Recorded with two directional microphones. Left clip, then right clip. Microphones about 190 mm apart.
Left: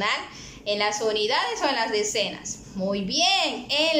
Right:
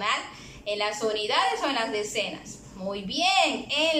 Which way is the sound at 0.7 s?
30° left (ahead or behind).